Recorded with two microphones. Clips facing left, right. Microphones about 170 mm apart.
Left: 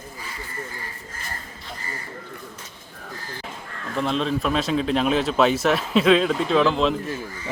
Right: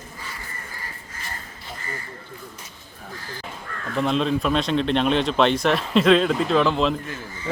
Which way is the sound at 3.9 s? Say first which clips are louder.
Right 2 dB; centre (ahead or behind).